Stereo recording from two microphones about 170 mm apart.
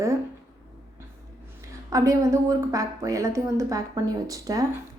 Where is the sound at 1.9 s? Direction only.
20° right (ahead or behind).